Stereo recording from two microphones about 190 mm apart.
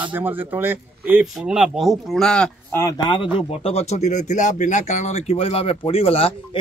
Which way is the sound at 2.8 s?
20° left (ahead or behind).